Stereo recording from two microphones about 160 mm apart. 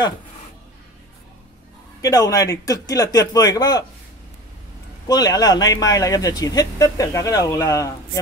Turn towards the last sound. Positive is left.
turn(degrees=20)  # may be behind; listen again after turning